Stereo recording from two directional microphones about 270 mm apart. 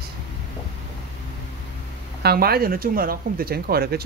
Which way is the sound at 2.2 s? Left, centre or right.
Right.